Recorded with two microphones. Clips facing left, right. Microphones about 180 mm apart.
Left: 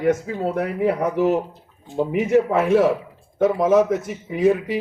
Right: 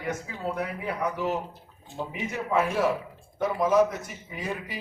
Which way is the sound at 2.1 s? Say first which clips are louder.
Left 11 dB; 70° left (ahead or behind).